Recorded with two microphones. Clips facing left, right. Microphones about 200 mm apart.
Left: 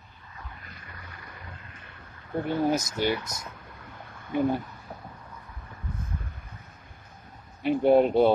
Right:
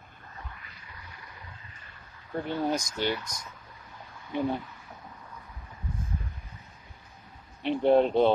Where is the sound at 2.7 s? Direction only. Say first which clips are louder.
Left 3 dB; 5° left (ahead or behind).